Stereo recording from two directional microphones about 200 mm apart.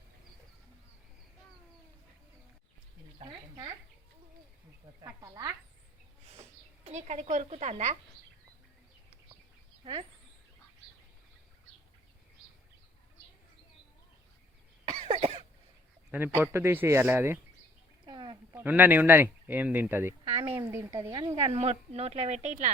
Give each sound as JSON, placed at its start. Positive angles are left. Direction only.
{"t": 3.2, "sound": "a sound", "side_deg": -25}
{"t": 5.0, "sound": "speech", "side_deg": -15}
{"t": 6.3, "sound": "speech", "side_deg": -35}
{"t": 9.8, "sound": "speech", "side_deg": -30}
{"t": 15.0, "sound": "cough", "side_deg": -30}
{"t": 16.1, "sound": "speech", "side_deg": -10}
{"t": 18.0, "sound": "a sound", "side_deg": -20}
{"t": 18.6, "sound": "speech", "side_deg": -10}